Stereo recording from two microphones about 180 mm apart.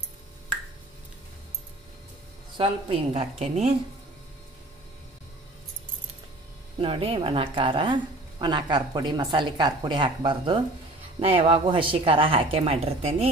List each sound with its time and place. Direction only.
2.5 s a woman's voice: 30° right (ahead or behind)
6.8 s a woman's voice: 30° right (ahead or behind)